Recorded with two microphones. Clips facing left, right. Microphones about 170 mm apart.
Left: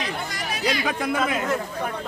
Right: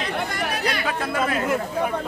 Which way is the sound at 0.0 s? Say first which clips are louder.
Right 4 dB; 55° right (ahead or behind).